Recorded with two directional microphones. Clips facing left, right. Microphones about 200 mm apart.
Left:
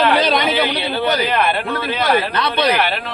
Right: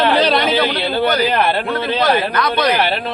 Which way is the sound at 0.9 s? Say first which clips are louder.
Right 3 dB; 35° right (ahead or behind).